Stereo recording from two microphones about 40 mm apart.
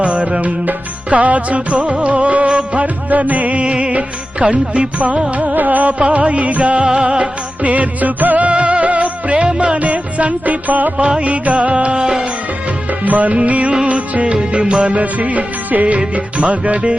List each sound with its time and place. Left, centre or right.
0.0 s music: right
8.4 s music: right
12.9 s music: right
14.8 s music: right